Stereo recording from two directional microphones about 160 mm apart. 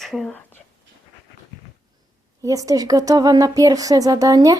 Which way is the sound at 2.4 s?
20° right (ahead or behind).